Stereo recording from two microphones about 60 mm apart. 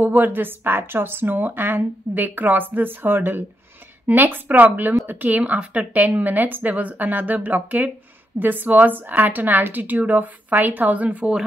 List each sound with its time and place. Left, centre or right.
0.0 s a woman's voice: right